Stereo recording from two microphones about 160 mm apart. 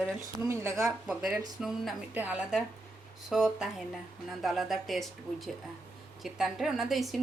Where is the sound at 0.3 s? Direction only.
15° right (ahead or behind).